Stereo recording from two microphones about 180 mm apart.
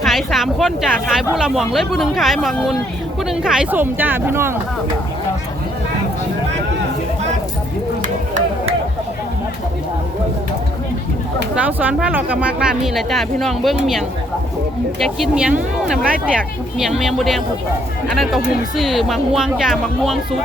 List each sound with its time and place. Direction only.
0.0 s speech: centre (ahead or behind)
8.0 s a sound: 45° right (ahead or behind)
11.5 s speech: 10° right (ahead or behind)
14.9 s speech: centre (ahead or behind)